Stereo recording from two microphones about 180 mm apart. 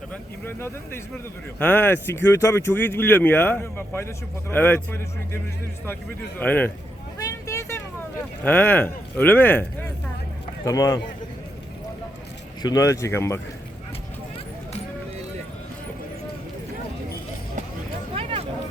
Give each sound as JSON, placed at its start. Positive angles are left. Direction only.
{"t": 0.1, "sound": "speech", "side_deg": 10}
{"t": 6.4, "sound": "speech", "side_deg": 10}
{"t": 7.2, "sound": "vehicle", "side_deg": 20}
{"t": 8.4, "sound": "speech", "side_deg": 10}
{"t": 12.6, "sound": "speech", "side_deg": 20}
{"t": 18.1, "sound": "vehicle", "side_deg": -30}